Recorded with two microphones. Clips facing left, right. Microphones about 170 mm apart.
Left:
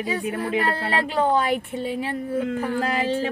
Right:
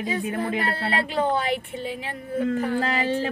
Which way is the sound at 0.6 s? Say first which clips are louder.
Left 2 dB; 35° left (ahead or behind).